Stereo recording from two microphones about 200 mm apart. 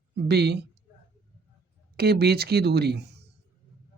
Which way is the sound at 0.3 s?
55° right (ahead or behind).